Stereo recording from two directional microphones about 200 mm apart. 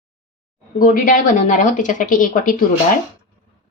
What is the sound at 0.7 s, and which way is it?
Speech, 40° left (ahead or behind).